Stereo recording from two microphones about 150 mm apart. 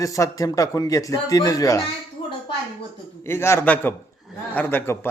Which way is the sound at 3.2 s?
15° left (ahead or behind).